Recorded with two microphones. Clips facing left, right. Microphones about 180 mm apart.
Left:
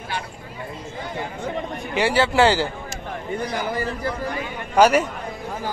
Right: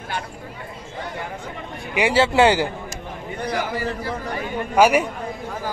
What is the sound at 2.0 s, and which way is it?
Speech, 20° right (ahead or behind).